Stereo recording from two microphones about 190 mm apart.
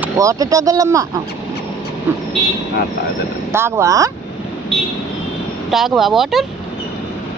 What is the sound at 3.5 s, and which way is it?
Speech, 15° right (ahead or behind).